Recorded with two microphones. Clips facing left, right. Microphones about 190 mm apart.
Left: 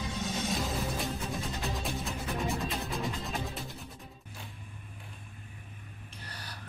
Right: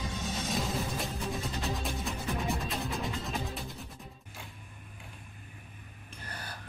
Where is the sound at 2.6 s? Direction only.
Centre (ahead or behind).